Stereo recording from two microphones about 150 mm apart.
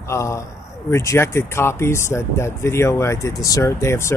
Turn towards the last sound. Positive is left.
turn(degrees=20)  # may be behind; listen again after turning